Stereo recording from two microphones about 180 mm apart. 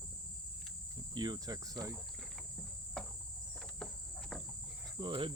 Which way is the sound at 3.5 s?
5° left (ahead or behind).